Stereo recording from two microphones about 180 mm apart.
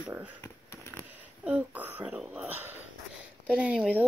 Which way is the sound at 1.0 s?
10° right (ahead or behind).